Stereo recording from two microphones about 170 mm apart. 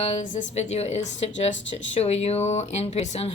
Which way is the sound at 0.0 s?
40° left (ahead or behind).